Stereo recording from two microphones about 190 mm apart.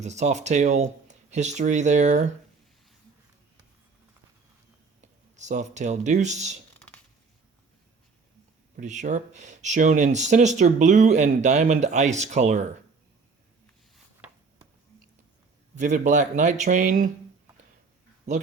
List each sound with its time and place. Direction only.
0.0 s speech: 35° right (ahead or behind)
4.9 s speech: 40° right (ahead or behind)
6.7 s a sound: 10° left (ahead or behind)
8.7 s speech: 40° right (ahead or behind)
15.7 s speech: 40° right (ahead or behind)